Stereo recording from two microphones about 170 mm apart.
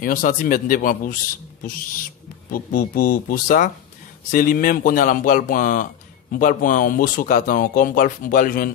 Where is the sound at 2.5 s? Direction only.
60° left (ahead or behind).